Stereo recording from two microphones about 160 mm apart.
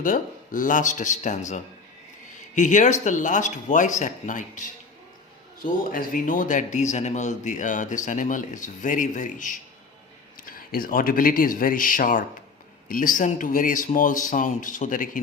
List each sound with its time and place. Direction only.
0.0 s speech: 55° left (ahead or behind)
5.6 s speech: 60° left (ahead or behind)